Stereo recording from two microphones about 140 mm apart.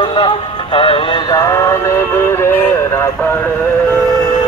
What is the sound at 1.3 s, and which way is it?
Music, 25° left (ahead or behind).